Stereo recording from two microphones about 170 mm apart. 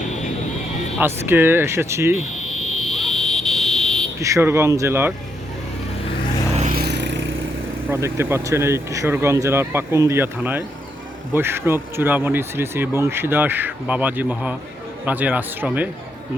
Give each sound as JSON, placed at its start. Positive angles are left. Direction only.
{"t": 0.9, "sound": "speech", "side_deg": -15}
{"t": 2.8, "sound": "buzzer", "side_deg": 0}
{"t": 4.2, "sound": "speech", "side_deg": -15}
{"t": 6.7, "sound": "vehicle", "side_deg": -80}
{"t": 7.9, "sound": "speech", "side_deg": -15}